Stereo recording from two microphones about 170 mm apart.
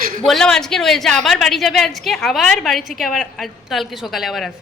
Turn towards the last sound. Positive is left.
turn(degrees=0)  # may be behind; listen again after turning